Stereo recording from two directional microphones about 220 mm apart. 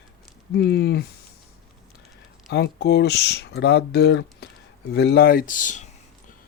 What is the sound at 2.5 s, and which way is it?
Speech, 50° left (ahead or behind).